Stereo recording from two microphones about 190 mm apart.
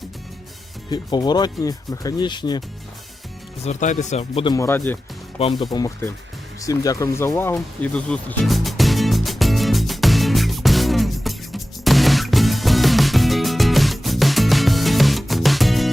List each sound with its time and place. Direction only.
0.9 s speech: 20° left (ahead or behind)
3.6 s a man's voice: 40° left (ahead or behind)
4.4 s speech: 15° left (ahead or behind)
5.4 s a man's voice: 30° left (ahead or behind)
5.7 s speech: 15° left (ahead or behind)
6.6 s music: 15° left (ahead or behind); by 15.9 s centre (ahead or behind)